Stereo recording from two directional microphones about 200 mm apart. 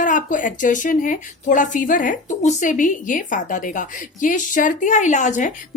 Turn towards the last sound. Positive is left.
turn(degrees=35)  # may be behind; listen again after turning